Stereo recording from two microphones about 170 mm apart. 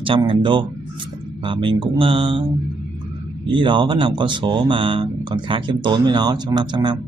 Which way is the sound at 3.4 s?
30° right (ahead or behind).